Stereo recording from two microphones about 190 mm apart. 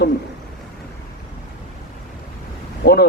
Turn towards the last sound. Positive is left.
turn(degrees=60)  # may be behind; listen again after turning